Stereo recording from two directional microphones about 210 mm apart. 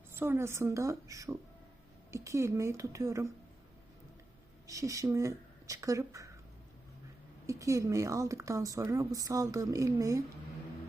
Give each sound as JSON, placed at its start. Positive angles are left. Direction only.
{"t": 0.2, "sound": "a woman's voice", "side_deg": -10}
{"t": 4.6, "sound": "speech", "side_deg": -15}
{"t": 7.4, "sound": "a woman's voice", "side_deg": -15}